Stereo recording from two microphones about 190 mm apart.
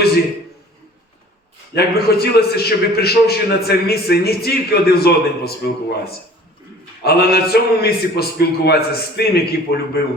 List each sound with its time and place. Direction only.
1.7 s a man's voice: 55° left (ahead or behind)